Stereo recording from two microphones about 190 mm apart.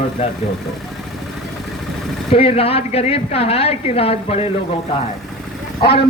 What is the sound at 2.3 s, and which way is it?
Speech, 30° left (ahead or behind).